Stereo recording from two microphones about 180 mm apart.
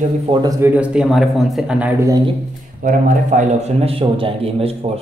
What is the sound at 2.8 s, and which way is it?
Speech, 45° right (ahead or behind).